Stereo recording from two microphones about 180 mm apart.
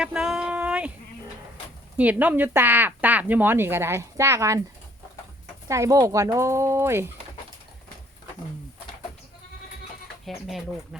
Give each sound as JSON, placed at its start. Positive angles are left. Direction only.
{"t": 0.0, "sound": "a sound", "side_deg": -5}
{"t": 2.0, "sound": "speech", "side_deg": -10}
{"t": 5.6, "sound": "speech", "side_deg": -15}
{"t": 10.2, "sound": "speech", "side_deg": 0}